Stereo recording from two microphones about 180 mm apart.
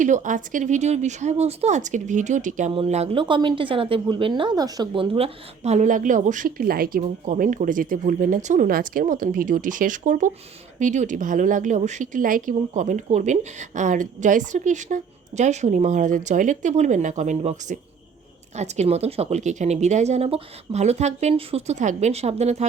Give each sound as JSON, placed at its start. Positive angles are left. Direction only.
{"t": 0.0, "sound": "speech", "side_deg": -45}